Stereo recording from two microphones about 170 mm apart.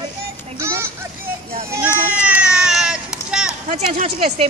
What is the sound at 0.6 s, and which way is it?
Speech, 15° right (ahead or behind).